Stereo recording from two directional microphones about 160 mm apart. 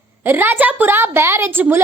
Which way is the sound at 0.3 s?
15° right (ahead or behind).